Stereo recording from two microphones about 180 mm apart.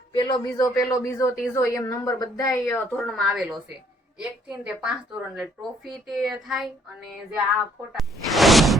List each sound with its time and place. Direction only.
0.1 s speech: 25° left (ahead or behind); by 7.4 s centre (ahead or behind)
7.9 s whoosh: centre (ahead or behind)